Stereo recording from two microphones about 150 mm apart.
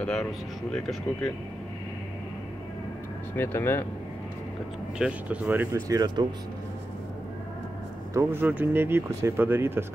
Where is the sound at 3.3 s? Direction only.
15° left (ahead or behind).